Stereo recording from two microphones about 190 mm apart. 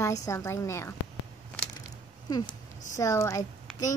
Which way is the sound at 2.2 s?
20° left (ahead or behind).